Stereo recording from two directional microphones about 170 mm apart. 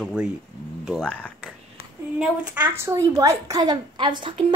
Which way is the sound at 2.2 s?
10° right (ahead or behind).